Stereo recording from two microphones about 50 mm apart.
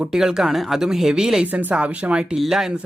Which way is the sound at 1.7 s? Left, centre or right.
Right.